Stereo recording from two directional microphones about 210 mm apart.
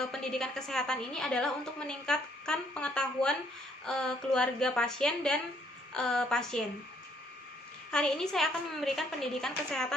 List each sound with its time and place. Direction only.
0.0 s a woman's voice: centre (ahead or behind)
7.9 s a woman's voice: 5° left (ahead or behind)